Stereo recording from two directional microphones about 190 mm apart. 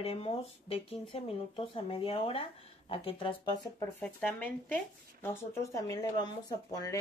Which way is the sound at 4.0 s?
5° left (ahead or behind).